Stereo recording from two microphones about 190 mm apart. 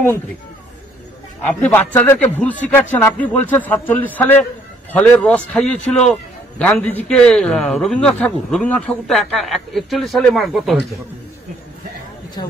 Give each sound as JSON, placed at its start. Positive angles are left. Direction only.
{"t": 1.6, "sound": "a man's voice", "side_deg": 10}
{"t": 12.4, "sound": "speech", "side_deg": 20}